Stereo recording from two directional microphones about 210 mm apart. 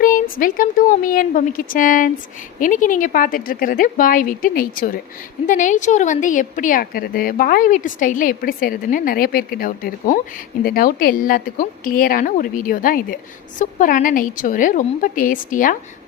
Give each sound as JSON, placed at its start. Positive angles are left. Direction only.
{"t": 0.0, "sound": "a woman's voice", "side_deg": 40}